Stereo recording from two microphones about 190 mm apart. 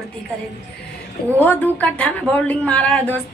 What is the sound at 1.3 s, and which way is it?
A woman's voice, 10° left (ahead or behind).